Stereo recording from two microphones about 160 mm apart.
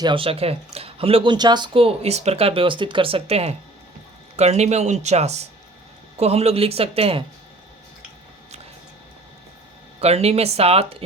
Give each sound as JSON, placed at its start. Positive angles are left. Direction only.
{"t": 0.0, "sound": "speech", "side_deg": -35}
{"t": 10.0, "sound": "speech", "side_deg": -40}